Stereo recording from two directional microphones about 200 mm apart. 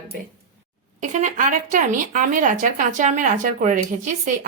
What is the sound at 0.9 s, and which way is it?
Speech, 40° right (ahead or behind).